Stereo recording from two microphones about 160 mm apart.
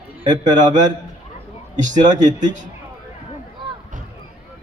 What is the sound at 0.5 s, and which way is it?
A man's voice, 50° right (ahead or behind).